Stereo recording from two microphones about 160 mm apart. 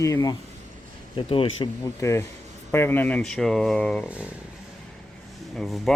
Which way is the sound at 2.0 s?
20° left (ahead or behind).